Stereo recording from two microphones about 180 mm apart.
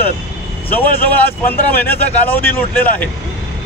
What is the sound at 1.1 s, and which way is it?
Speech, 10° left (ahead or behind).